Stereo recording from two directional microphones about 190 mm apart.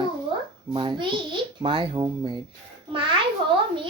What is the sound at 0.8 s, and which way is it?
A child's voice, 25° right (ahead or behind).